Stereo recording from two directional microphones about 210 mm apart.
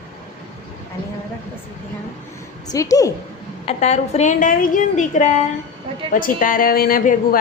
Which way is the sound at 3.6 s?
30° left (ahead or behind).